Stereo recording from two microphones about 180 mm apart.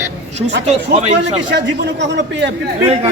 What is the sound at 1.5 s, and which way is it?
A man's voice, 75° right (ahead or behind).